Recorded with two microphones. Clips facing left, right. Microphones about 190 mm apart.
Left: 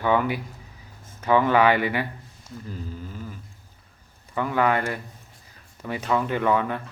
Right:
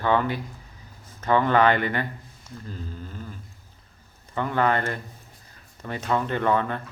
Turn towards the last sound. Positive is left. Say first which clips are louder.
# left 1 dB
turn(degrees=10)  # may be behind; listen again after turning